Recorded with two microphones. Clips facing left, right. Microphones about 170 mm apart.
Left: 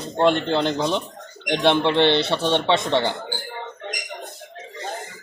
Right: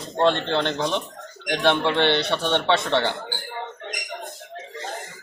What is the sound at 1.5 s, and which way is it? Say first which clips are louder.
Speech: left 2 dB; 20° left (ahead or behind).